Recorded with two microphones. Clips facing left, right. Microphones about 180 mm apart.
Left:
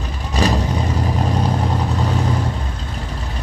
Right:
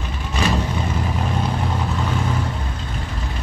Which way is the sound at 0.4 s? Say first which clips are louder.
Left 3 dB; 35° left (ahead or behind).